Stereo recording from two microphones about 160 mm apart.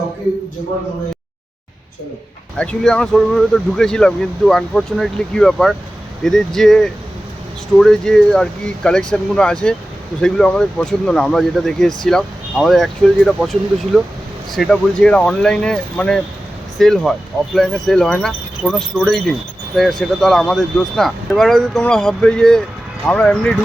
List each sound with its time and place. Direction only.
2.6 s speech: 5° left (ahead or behind)